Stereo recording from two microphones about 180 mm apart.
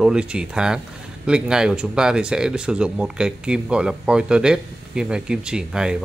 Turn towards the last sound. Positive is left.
turn(degrees=-5)  # may be behind; listen again after turning